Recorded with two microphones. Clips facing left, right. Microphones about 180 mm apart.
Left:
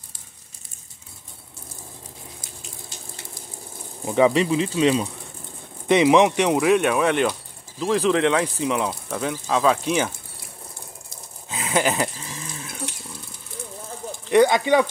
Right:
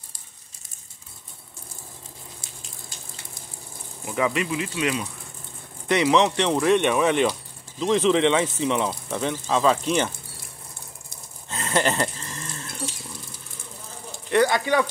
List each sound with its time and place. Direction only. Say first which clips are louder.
4.0 s speech: left 7 dB; 30° left (ahead or behind)
5.9 s speech: left 4 dB; 20° left (ahead or behind)
11.4 s goat: left 1 dB; 5° left (ahead or behind)
14.3 s speech: left 4 dB; 20° left (ahead or behind)